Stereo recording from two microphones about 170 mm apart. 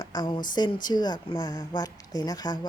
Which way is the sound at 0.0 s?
25° left (ahead or behind).